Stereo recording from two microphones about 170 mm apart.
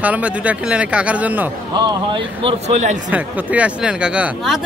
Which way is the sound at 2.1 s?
35° right (ahead or behind).